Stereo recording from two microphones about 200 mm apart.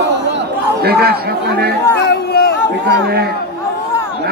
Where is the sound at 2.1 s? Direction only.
50° left (ahead or behind).